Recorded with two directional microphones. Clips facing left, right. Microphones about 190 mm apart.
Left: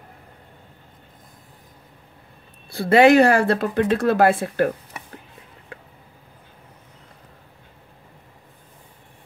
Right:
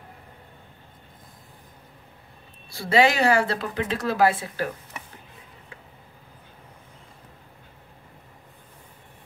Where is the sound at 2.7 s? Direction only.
55° left (ahead or behind).